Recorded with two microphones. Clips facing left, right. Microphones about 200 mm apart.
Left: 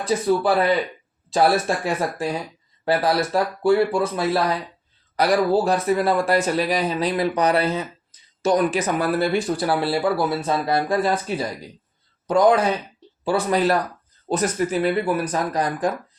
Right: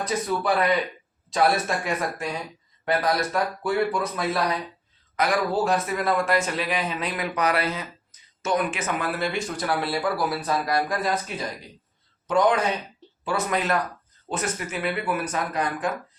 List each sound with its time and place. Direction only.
0.3 s speech: 30° left (ahead or behind)
13.2 s speech: 30° left (ahead or behind)